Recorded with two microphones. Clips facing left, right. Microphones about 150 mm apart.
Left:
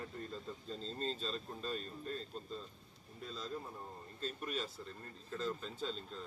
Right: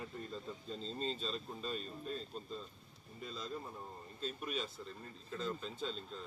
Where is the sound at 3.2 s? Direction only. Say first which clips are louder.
Even; 5° right (ahead or behind).